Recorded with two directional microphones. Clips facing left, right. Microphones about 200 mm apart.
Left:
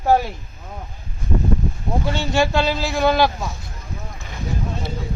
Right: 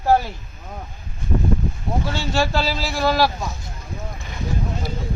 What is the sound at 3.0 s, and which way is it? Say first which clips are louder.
Speech: left 2 dB; 15° left (ahead or behind).